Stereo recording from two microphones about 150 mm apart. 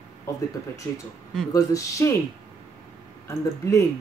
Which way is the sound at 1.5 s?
20° left (ahead or behind).